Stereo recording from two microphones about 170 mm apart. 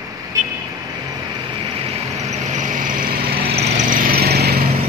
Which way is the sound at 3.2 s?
40° right (ahead or behind).